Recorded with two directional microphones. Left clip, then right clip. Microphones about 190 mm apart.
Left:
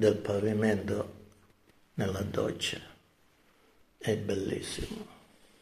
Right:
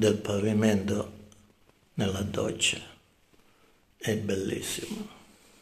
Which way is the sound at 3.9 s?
10° right (ahead or behind).